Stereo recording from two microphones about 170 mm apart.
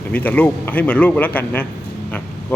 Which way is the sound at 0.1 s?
10° left (ahead or behind).